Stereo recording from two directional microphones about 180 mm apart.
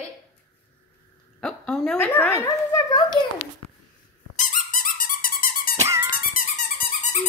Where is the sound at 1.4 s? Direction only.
5° left (ahead or behind).